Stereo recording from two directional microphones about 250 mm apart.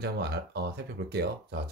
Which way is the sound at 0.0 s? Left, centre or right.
Right.